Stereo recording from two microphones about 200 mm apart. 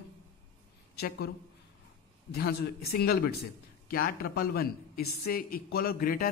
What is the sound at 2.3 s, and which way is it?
Speech, 50° left (ahead or behind).